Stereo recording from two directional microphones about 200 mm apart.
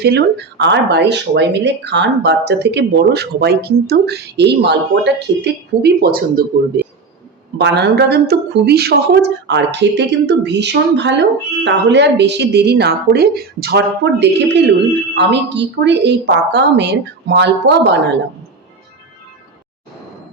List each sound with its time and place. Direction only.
0.0 s a woman's voice: 55° right (ahead or behind)
7.6 s a woman's voice: 55° right (ahead or behind)